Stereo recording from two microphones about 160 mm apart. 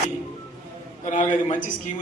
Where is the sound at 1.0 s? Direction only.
50° left (ahead or behind).